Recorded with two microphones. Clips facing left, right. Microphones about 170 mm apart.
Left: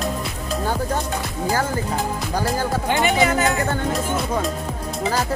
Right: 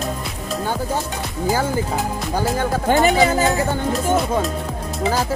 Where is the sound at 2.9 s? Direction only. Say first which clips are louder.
Right 4 dB; 35° right (ahead or behind).